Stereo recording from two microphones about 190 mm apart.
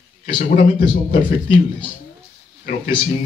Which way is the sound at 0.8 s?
50° left (ahead or behind).